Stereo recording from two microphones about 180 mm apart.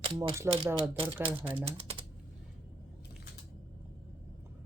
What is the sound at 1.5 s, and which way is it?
Speech, 30° right (ahead or behind).